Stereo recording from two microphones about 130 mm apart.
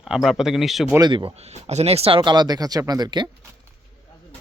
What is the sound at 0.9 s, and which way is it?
Speech, 35° right (ahead or behind).